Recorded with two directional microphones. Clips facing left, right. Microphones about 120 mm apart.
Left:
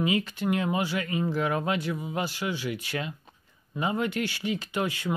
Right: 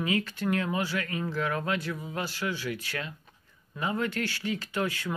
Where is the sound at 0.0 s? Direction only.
20° left (ahead or behind).